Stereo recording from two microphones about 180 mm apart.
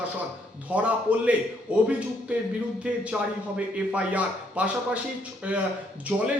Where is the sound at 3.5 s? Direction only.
5° right (ahead or behind).